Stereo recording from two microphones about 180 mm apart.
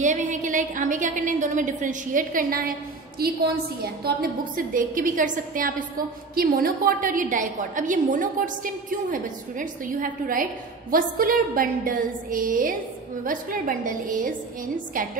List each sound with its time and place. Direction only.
0.0 s a woman's voice: 45° right (ahead or behind)
3.8 s a woman's voice: 55° right (ahead or behind)